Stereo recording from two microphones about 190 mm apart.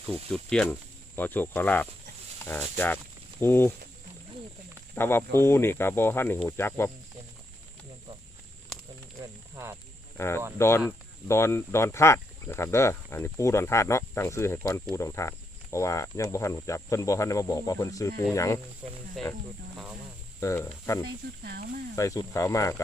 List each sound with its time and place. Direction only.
0.3 s speech: 5° left (ahead or behind)
4.9 s speech: 10° left (ahead or behind)
9.2 s speech: 15° right (ahead or behind)
10.2 s speech: 15° left (ahead or behind)
20.4 s speech: 15° left (ahead or behind)
21.4 s speech: 55° right (ahead or behind)
21.9 s speech: 15° left (ahead or behind)